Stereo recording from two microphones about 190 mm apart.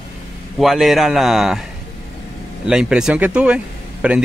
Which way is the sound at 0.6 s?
Centre (ahead or behind).